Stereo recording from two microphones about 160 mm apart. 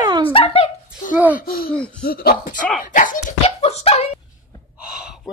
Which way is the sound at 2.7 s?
55° left (ahead or behind).